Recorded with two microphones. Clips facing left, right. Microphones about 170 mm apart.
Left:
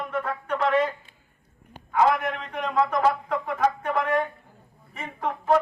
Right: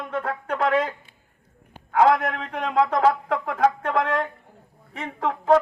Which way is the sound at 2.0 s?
85° right.